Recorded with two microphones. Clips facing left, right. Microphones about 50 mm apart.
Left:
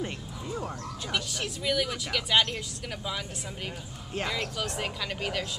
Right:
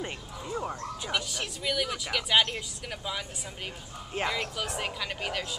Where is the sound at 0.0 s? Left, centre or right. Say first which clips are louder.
Left 1 dB; centre.